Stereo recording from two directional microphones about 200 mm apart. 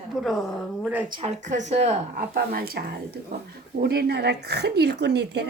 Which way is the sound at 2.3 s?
50° right (ahead or behind).